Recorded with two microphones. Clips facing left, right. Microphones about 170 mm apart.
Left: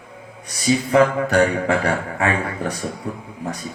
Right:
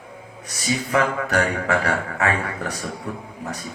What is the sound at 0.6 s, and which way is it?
Speech, 30° left (ahead or behind).